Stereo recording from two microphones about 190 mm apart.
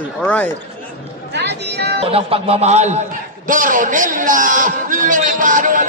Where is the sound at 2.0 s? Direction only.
30° right (ahead or behind).